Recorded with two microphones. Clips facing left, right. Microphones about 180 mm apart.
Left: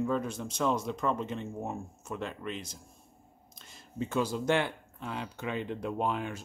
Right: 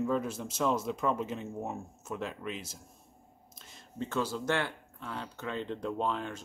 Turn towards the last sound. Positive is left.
turn(degrees=10)  # may be behind; listen again after turning